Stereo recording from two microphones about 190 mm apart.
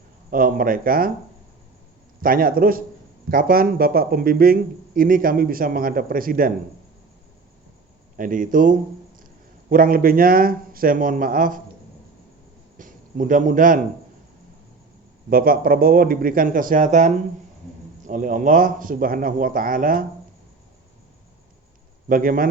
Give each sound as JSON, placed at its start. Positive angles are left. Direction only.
{"t": 0.3, "sound": "speech", "side_deg": -45}
{"t": 2.2, "sound": "speech", "side_deg": -50}
{"t": 8.1, "sound": "speech", "side_deg": -45}
{"t": 12.7, "sound": "a man's voice", "side_deg": -45}
{"t": 15.3, "sound": "speech", "side_deg": -50}
{"t": 22.1, "sound": "speech", "side_deg": -45}